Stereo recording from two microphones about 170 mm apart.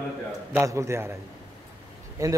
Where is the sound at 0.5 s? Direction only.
15° right (ahead or behind).